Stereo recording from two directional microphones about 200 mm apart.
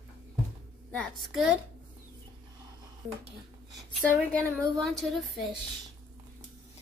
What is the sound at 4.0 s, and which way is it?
A woman's voice, 5° left (ahead or behind).